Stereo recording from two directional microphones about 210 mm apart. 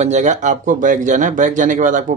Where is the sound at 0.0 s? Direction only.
35° right (ahead or behind).